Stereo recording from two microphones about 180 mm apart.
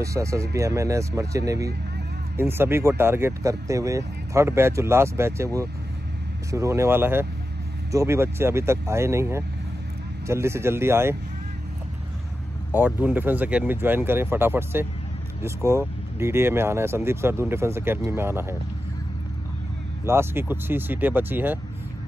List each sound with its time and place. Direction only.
0.0 s speech: 15° right (ahead or behind)
12.7 s speech: 10° right (ahead or behind)
20.1 s speech: 15° right (ahead or behind)